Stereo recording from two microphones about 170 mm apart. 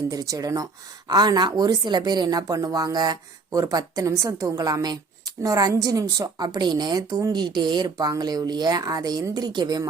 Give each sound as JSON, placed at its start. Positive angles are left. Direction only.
{"t": 0.1, "sound": "speech", "side_deg": -20}